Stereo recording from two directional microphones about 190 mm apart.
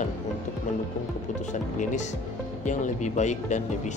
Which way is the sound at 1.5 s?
40° left (ahead or behind).